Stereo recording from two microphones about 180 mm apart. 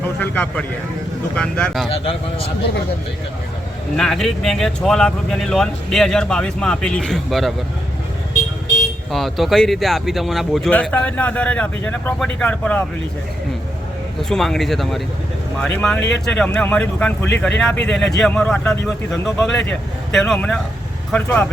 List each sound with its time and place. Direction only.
0.2 s speech: 10° left (ahead or behind)
3.9 s speech: 5° left (ahead or behind)
9.1 s speech: centre (ahead or behind)
14.2 s speech: centre (ahead or behind)
16.0 s speech: 80° left
16.2 s speech: 5° left (ahead or behind)